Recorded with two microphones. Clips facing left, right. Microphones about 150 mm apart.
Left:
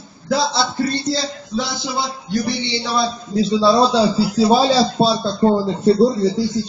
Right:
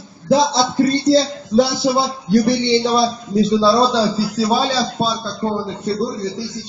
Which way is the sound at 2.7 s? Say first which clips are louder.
Right 3 dB; 20° right (ahead or behind).